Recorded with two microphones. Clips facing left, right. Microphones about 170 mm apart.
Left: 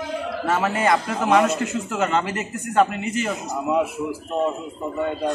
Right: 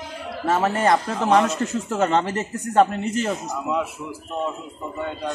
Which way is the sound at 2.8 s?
5° left (ahead or behind).